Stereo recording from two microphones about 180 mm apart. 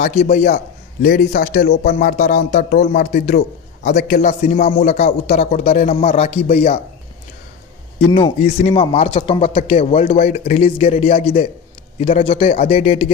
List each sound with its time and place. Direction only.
0.0 s a man's voice: 40° left (ahead or behind)
8.0 s speech: 35° left (ahead or behind)